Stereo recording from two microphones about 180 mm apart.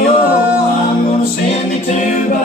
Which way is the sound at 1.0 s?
40° left (ahead or behind).